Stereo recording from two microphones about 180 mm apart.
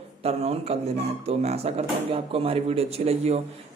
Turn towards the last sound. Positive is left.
turn(degrees=-35)  # may be behind; listen again after turning